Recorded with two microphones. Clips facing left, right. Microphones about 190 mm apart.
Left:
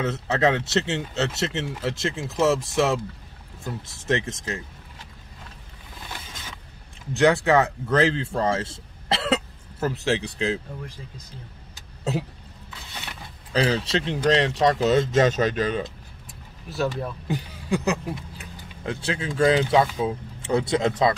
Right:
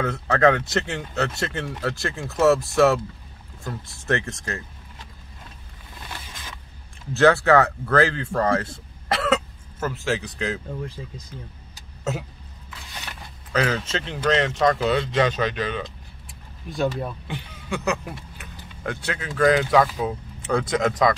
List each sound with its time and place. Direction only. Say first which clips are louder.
0.0 s speech: right 3 dB; 20° left (ahead or behind)
7.2 s speech: right 2 dB; 15° left (ahead or behind)
12.0 s speech: left 1 dB; 35° left (ahead or behind)
13.5 s speech: left 1 dB; 30° left (ahead or behind)
17.3 s a man's voice: left 5 dB; 35° left (ahead or behind)